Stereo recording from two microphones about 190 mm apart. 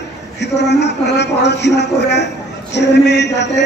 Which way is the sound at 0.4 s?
65° left (ahead or behind).